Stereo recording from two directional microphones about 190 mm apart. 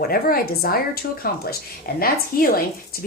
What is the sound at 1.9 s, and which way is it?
Speech, 50° left (ahead or behind).